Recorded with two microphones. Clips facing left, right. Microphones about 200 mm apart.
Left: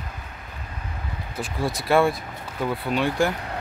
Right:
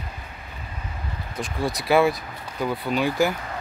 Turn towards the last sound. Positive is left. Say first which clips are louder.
# right 1 dB
turn(degrees=0)  # may be behind; listen again after turning